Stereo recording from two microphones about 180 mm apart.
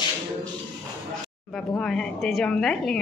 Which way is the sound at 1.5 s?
5° left (ahead or behind).